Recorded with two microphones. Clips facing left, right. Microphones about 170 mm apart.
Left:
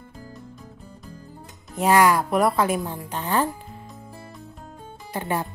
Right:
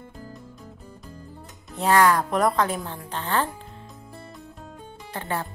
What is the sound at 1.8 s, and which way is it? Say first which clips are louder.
A woman's voice: left 1 dB; 10° left (ahead or behind).